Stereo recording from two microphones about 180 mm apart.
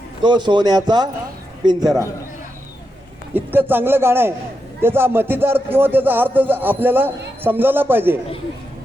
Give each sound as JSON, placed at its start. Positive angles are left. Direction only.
{"t": 0.2, "sound": "speech", "side_deg": -25}
{"t": 3.3, "sound": "speech", "side_deg": -10}